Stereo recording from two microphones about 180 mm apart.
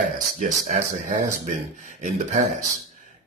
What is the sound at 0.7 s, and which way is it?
Speech, 45° right (ahead or behind).